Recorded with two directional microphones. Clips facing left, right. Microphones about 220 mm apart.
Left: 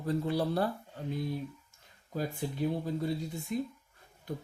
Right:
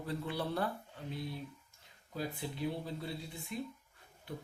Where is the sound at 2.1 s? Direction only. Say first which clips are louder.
Left 5 dB; 45° left (ahead or behind).